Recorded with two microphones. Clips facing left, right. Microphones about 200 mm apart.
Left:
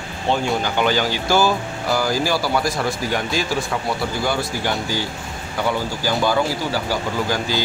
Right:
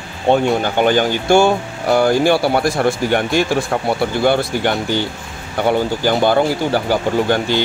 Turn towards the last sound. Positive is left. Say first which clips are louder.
# right 7 dB
turn(degrees=-60)  # may be behind; listen again after turning